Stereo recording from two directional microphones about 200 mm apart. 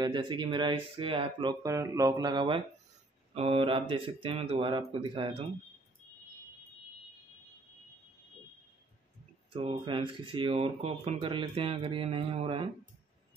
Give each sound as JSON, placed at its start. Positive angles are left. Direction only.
{"t": 0.0, "sound": "speech", "side_deg": -20}
{"t": 9.5, "sound": "speech", "side_deg": -25}